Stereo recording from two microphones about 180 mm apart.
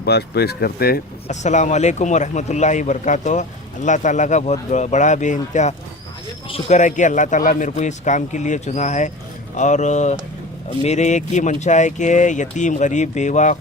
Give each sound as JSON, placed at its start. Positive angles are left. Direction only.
{"t": 0.0, "sound": "speech", "side_deg": 65}
{"t": 1.3, "sound": "speech", "side_deg": 40}